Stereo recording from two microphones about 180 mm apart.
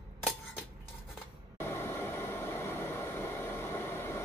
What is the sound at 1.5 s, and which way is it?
Train, 15° left (ahead or behind).